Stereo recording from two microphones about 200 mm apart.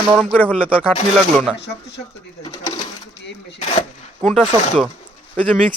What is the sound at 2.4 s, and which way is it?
Bird, 20° left (ahead or behind).